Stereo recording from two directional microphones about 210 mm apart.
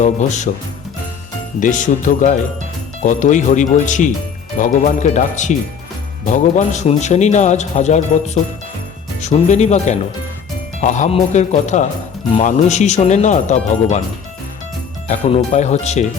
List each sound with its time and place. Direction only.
0.0 s a man's voice: 35° left (ahead or behind)
1.5 s a man's voice: 40° left (ahead or behind)
15.5 s a man's voice: 35° left (ahead or behind)